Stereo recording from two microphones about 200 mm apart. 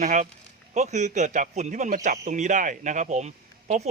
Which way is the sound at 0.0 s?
40° right (ahead or behind).